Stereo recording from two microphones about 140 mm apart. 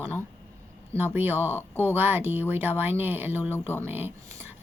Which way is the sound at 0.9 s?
15° right (ahead or behind).